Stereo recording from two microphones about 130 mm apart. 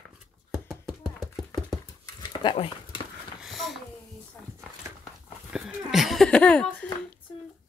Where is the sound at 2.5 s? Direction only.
45° left (ahead or behind).